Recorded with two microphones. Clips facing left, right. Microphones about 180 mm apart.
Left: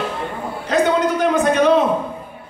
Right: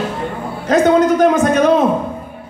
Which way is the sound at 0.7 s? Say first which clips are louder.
Right 6 dB; 45° right (ahead or behind).